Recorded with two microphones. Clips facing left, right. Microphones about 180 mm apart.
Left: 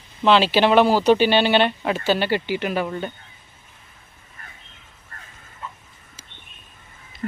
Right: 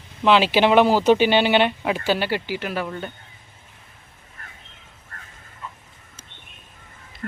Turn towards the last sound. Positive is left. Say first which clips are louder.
# left 4 dB
turn(degrees=5)  # may be behind; listen again after turning